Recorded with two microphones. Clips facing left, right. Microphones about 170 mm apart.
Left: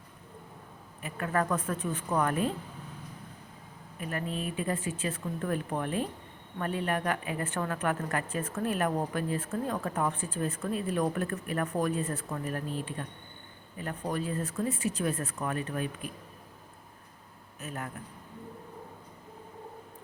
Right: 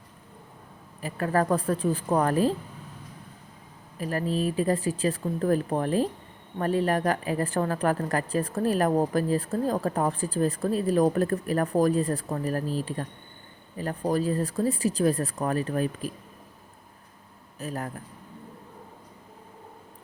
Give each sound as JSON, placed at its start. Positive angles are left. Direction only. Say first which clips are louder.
{"t": 1.0, "sound": "a woman's voice", "louder": "right 5 dB", "side_deg": -35}
{"t": 3.9, "sound": "a woman's voice", "louder": "right 7 dB", "side_deg": -35}
{"t": 17.6, "sound": "a woman's voice", "louder": "right 6 dB", "side_deg": -35}